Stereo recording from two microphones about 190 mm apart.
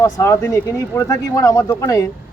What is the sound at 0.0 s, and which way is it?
Speech, 15° left (ahead or behind).